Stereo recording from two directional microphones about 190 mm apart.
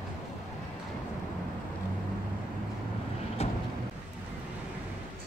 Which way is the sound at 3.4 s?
35° left (ahead or behind).